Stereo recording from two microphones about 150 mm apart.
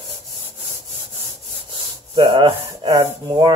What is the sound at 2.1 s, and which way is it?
Rub, 35° right (ahead or behind).